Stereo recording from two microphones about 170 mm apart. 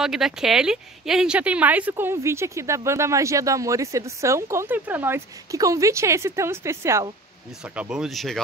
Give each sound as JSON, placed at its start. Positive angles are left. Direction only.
{"t": 0.0, "sound": "speech", "side_deg": -5}